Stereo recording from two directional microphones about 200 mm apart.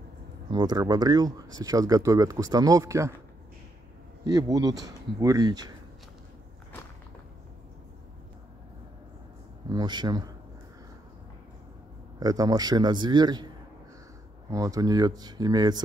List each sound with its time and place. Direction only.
0.5 s speech: 20° right (ahead or behind)
4.3 s speech: 20° right (ahead or behind)
9.7 s a man's voice: 20° right (ahead or behind)
12.2 s a man's voice: 20° right (ahead or behind)
14.5 s a man's voice: 15° right (ahead or behind)